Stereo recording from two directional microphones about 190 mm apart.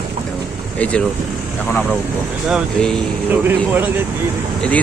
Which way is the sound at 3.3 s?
10° right (ahead or behind).